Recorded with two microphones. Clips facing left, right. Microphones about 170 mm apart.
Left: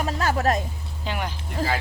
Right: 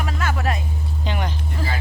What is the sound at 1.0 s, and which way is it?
Speech, 5° left (ahead or behind).